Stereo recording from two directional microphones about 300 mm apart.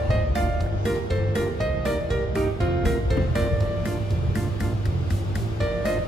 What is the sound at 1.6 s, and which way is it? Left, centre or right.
Music, centre.